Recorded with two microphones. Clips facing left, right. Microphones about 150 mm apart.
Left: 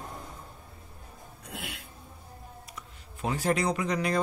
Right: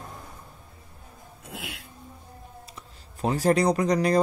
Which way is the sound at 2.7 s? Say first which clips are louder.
Even; 35° right (ahead or behind).